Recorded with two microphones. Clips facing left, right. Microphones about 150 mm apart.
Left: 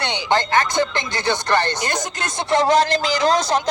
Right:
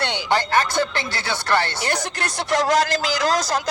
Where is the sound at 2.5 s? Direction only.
25° left (ahead or behind).